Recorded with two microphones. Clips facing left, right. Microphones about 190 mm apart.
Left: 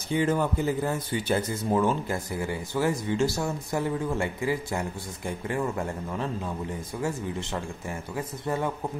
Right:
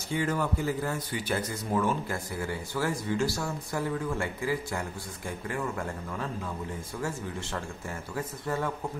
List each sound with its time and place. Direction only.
0.1 s a man's voice: 20° left (ahead or behind)